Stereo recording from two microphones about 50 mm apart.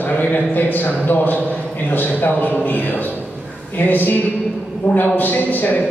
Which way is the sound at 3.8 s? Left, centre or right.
Left.